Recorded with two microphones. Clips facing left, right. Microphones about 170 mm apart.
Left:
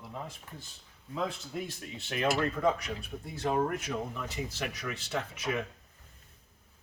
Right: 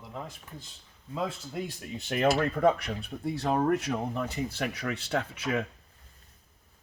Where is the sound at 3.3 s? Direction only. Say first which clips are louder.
Right 3 dB; 65° right (ahead or behind).